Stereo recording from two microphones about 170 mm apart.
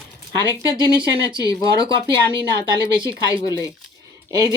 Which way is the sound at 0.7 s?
25° left (ahead or behind).